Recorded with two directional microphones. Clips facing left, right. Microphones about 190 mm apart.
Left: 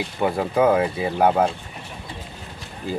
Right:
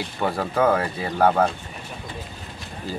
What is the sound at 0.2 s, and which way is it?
Speech, 10° left (ahead or behind).